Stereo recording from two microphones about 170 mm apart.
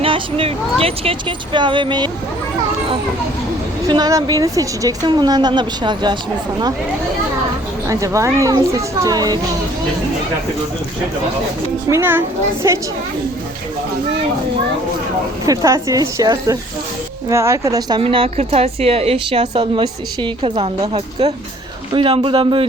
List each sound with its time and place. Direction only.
0.0 s a woman's voice: 30° right (ahead or behind)
3.8 s a woman's voice: 25° right (ahead or behind)
7.9 s a woman's voice: 20° right (ahead or behind)
11.9 s a child's voice: 15° right (ahead or behind)
15.4 s a woman's voice: 20° right (ahead or behind)